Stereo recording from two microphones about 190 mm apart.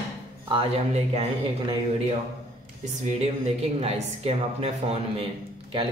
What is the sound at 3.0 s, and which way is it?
Speech, 35° right (ahead or behind).